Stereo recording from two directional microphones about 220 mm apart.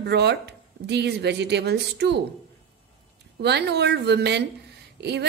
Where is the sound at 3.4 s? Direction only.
50° right (ahead or behind).